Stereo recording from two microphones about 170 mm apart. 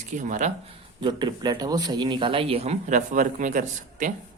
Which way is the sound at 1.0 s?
25° right (ahead or behind).